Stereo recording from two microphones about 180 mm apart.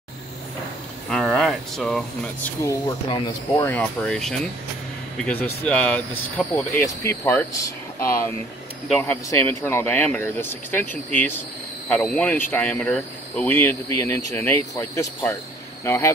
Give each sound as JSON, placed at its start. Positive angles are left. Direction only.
{"t": 1.0, "sound": "speech", "side_deg": 0}
{"t": 2.6, "sound": "speech", "side_deg": 20}
{"t": 3.6, "sound": "speech", "side_deg": 5}
{"t": 8.8, "sound": "speech", "side_deg": 5}